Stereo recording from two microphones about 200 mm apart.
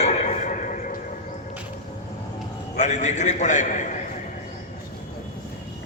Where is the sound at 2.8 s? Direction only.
35° left (ahead or behind).